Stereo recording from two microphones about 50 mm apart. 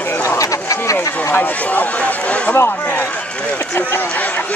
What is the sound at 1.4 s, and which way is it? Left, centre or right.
Speech, left.